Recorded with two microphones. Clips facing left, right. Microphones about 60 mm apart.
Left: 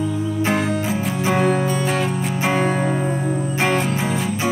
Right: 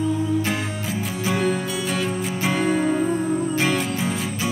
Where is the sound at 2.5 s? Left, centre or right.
Centre.